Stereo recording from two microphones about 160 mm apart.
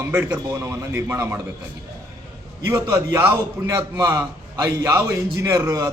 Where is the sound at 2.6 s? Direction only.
15° right (ahead or behind).